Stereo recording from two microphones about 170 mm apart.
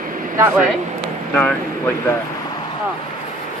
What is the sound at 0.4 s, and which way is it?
Speech, 10° right (ahead or behind).